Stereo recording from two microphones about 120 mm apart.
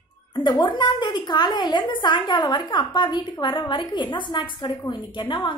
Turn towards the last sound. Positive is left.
turn(degrees=40)  # may be behind; listen again after turning